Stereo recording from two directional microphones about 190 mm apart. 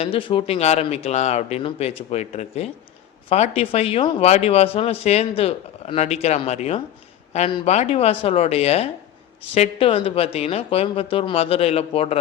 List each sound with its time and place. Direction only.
0.0 s speech: 25° left (ahead or behind)